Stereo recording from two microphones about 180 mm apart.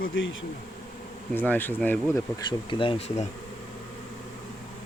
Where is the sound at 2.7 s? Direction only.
30° left (ahead or behind).